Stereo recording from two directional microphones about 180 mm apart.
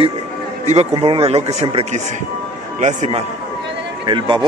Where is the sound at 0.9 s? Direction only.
30° right (ahead or behind).